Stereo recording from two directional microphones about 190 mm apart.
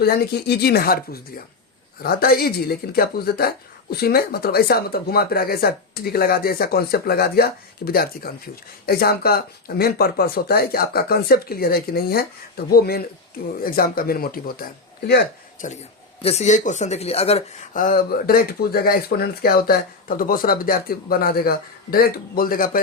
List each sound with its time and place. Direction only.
0.0 s speech: 55° left (ahead or behind)
15.6 s speech: 45° left (ahead or behind)
17.7 s speech: 45° left (ahead or behind)